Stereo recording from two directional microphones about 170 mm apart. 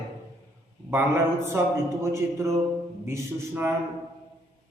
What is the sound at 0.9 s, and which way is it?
A man's voice, 15° right (ahead or behind).